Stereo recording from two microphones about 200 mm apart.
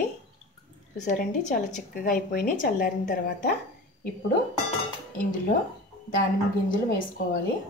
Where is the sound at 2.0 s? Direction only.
45° left (ahead or behind).